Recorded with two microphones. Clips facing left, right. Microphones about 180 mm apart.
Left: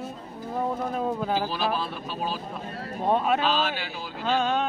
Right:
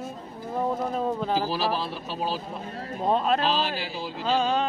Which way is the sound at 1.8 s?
30° right (ahead or behind).